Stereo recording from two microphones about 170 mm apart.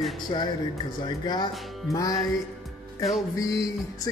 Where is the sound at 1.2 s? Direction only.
25° left (ahead or behind).